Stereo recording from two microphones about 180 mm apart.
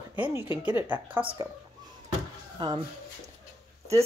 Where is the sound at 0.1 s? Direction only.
10° right (ahead or behind).